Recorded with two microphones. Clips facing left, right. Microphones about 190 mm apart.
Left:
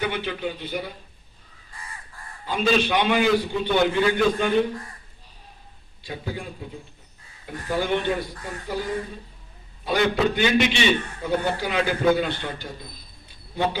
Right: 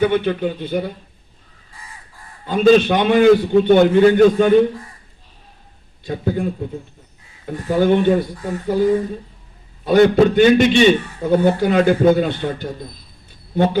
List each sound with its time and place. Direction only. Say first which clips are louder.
0.0 s a man's voice: right 10 dB; 55° right (ahead or behind)
2.5 s a man's voice: right 9 dB; 50° right (ahead or behind)
6.1 s a man's voice: right 11 dB; 45° right (ahead or behind)
9.8 s a man's voice: right 10 dB; 50° right (ahead or behind)